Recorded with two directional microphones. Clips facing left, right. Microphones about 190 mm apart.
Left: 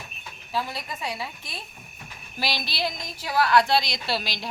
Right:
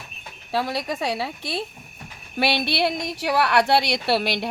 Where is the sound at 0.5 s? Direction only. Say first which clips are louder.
Right 6 dB; 75° right (ahead or behind).